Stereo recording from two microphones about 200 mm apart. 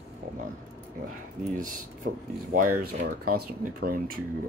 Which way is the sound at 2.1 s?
65° right (ahead or behind).